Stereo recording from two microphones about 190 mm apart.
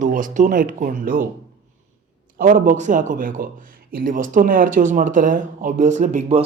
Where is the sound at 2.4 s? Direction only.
45° right (ahead or behind).